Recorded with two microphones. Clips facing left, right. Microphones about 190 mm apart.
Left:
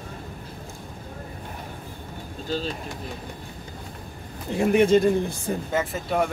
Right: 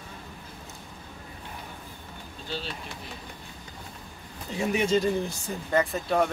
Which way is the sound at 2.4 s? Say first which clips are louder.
Left 7 dB; 45° left (ahead or behind).